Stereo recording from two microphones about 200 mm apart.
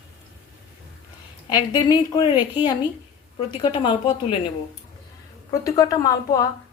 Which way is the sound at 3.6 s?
25° left (ahead or behind).